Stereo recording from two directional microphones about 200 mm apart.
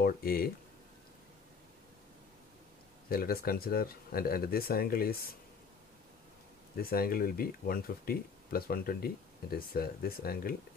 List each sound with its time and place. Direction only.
0.0 s speech: 50° left (ahead or behind)
3.1 s speech: 50° left (ahead or behind)
6.8 s speech: 50° left (ahead or behind)